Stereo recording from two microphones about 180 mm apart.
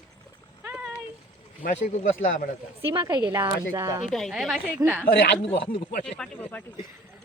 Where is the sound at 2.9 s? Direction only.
25° right (ahead or behind).